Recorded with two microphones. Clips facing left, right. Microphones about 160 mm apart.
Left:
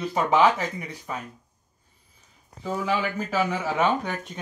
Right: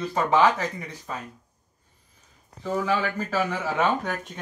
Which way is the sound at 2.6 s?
15° left (ahead or behind).